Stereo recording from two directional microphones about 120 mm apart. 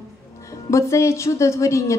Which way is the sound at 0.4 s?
25° left (ahead or behind).